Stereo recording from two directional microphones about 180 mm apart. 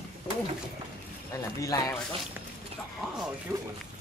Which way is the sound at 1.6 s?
20° left (ahead or behind).